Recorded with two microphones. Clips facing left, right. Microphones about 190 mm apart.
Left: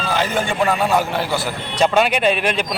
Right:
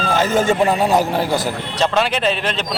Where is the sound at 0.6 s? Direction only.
30° right (ahead or behind).